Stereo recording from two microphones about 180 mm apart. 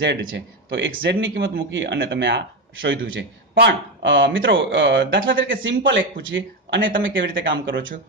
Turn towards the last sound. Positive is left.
turn(degrees=-90)